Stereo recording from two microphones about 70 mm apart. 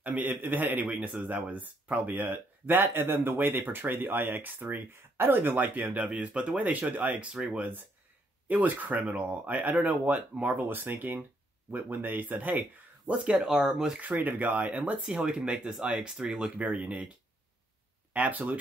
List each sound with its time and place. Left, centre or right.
0.0 s speech: right
5.9 s speech: centre
8.5 s speech: right
13.2 s speech: centre
14.0 s speech: right
16.6 s speech: right
18.1 s speech: right